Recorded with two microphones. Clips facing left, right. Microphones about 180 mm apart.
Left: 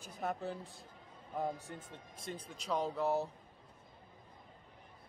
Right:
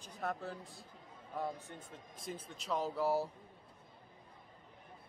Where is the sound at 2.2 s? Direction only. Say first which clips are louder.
Even; centre (ahead or behind).